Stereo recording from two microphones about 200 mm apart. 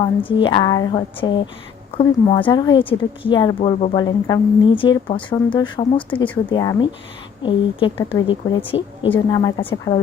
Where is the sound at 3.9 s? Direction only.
20° left (ahead or behind).